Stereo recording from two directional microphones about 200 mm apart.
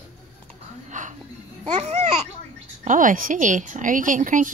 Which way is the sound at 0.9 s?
40° right (ahead or behind).